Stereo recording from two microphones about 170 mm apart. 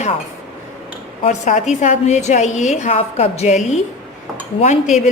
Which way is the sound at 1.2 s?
45° left (ahead or behind).